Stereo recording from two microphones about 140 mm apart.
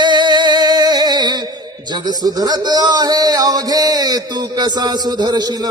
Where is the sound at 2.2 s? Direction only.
25° right (ahead or behind).